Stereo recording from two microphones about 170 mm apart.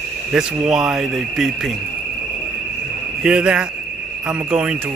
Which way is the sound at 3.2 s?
5° right (ahead or behind).